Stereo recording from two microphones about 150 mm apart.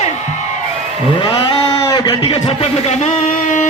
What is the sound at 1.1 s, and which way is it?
Speech, 30° left (ahead or behind).